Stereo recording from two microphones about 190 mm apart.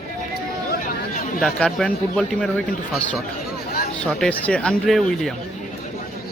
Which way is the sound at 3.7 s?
55° left (ahead or behind).